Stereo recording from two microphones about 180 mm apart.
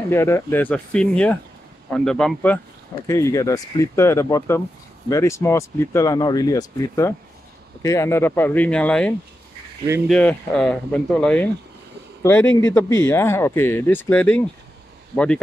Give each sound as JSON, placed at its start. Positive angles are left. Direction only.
{"t": 0.1, "sound": "speech", "side_deg": 15}
{"t": 3.1, "sound": "speech", "side_deg": 15}